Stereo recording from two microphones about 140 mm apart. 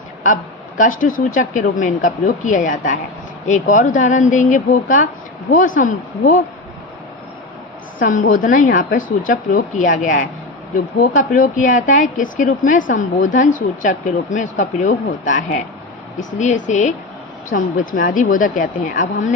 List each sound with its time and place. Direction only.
0.8 s a woman's voice: 70° left (ahead or behind)
7.9 s a woman's voice: 70° left (ahead or behind)
17.5 s a woman's voice: 70° left (ahead or behind)